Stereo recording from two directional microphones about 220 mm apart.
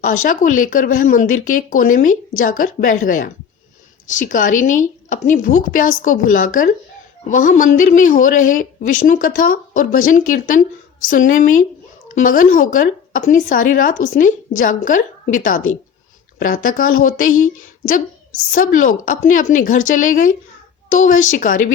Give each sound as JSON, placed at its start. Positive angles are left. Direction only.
{"t": 0.3, "sound": "speech", "side_deg": 35}
{"t": 16.6, "sound": "speech", "side_deg": 40}
{"t": 18.5, "sound": "speech", "side_deg": 40}